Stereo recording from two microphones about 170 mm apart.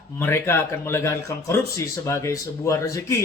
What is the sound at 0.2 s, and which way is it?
A man's voice, 15° left (ahead or behind).